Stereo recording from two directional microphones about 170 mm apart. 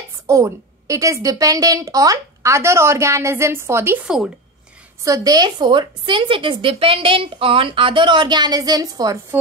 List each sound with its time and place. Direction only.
0.3 s a woman's voice: 20° right (ahead or behind)
5.0 s a woman's voice: 20° right (ahead or behind)